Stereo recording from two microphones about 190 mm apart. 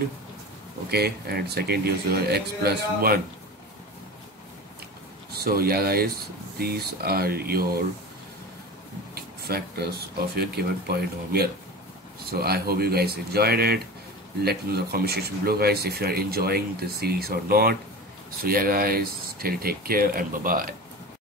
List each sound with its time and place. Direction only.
0.8 s speech: 55° right (ahead or behind)
5.3 s speech: 55° right (ahead or behind)
9.1 s a sound: 55° right (ahead or behind)
10.3 s speech: 55° right (ahead or behind)